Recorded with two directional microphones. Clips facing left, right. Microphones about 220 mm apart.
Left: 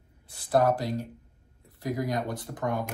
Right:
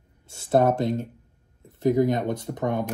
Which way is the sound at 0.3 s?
25° right (ahead or behind).